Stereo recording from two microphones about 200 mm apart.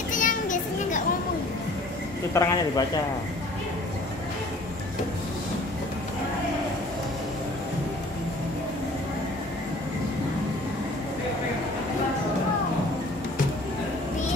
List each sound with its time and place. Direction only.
0.1 s children playing: 40° left (ahead or behind)
2.3 s speech: 20° left (ahead or behind)